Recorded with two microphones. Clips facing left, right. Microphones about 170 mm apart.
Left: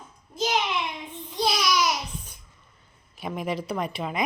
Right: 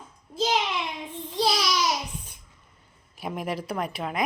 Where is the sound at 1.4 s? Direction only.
30° right (ahead or behind).